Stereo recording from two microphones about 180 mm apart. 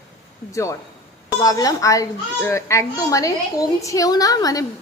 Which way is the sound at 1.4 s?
20° left (ahead or behind).